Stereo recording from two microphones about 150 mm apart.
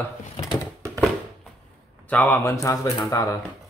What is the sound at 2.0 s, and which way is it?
A man's voice, 10° left (ahead or behind).